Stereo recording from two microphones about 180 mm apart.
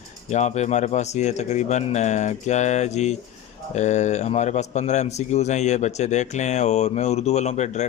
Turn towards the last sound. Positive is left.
turn(degrees=40)  # may be behind; listen again after turning